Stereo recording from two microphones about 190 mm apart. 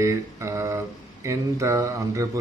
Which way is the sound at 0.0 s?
15° right (ahead or behind).